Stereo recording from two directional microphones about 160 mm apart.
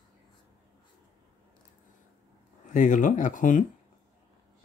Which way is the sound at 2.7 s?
55° left (ahead or behind).